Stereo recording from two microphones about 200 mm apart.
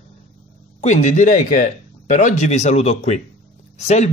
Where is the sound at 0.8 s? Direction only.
35° left (ahead or behind).